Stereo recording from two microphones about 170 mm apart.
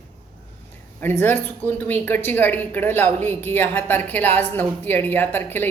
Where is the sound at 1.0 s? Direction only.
10° left (ahead or behind).